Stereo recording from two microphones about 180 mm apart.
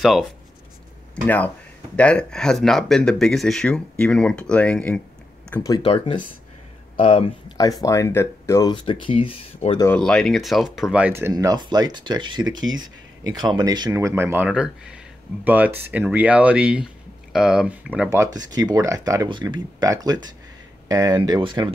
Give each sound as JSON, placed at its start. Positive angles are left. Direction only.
{"t": 0.0, "sound": "speech", "side_deg": 0}
{"t": 5.5, "sound": "speech", "side_deg": 20}
{"t": 5.9, "sound": "speech", "side_deg": 30}
{"t": 9.9, "sound": "speech", "side_deg": 5}
{"t": 18.1, "sound": "speech", "side_deg": -20}